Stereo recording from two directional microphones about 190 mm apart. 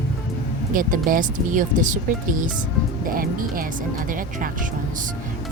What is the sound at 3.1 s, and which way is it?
Speech, 50° right (ahead or behind).